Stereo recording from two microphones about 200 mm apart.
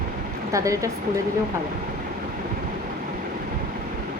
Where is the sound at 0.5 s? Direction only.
15° right (ahead or behind).